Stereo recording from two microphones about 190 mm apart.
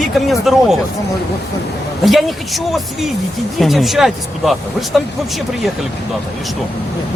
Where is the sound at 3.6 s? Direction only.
Centre (ahead or behind).